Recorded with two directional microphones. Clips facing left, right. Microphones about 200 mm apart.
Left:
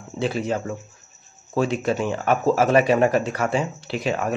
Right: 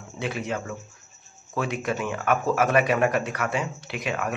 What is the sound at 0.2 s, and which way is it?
Speech, 30° left (ahead or behind).